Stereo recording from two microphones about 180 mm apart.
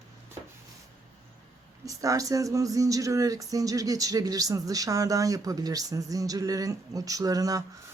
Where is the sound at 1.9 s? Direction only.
20° right (ahead or behind).